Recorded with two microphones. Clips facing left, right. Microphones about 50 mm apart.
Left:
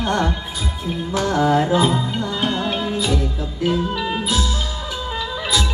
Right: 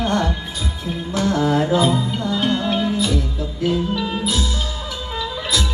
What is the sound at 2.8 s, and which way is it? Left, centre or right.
Music, centre.